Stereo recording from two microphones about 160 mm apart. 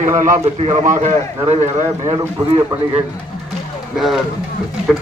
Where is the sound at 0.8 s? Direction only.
55° right (ahead or behind).